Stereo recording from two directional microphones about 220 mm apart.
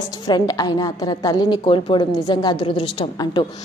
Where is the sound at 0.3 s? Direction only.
20° left (ahead or behind).